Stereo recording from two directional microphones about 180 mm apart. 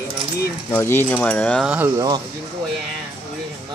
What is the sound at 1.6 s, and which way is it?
Speech, 10° right (ahead or behind).